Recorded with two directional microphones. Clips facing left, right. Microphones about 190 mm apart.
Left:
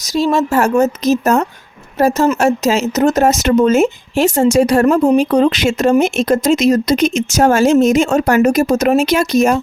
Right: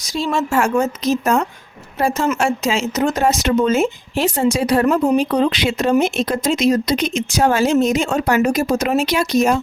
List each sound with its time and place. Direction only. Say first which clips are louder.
0.0 s a woman's voice: left 6 dB; 40° left (ahead or behind)